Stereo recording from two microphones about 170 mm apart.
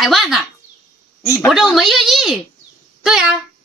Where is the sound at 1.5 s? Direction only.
Centre (ahead or behind).